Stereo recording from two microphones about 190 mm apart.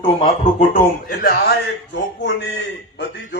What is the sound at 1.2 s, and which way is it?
Speech, 55° left (ahead or behind).